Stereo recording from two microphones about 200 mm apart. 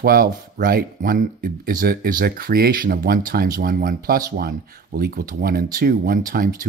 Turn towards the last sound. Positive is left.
turn(degrees=-45)  # may be behind; listen again after turning